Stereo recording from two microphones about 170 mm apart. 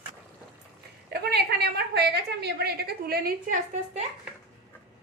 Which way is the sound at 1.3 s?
70° right (ahead or behind).